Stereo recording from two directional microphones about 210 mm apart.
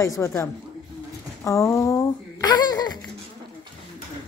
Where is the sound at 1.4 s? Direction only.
15° left (ahead or behind).